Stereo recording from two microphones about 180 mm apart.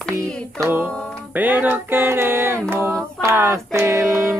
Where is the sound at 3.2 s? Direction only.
15° right (ahead or behind).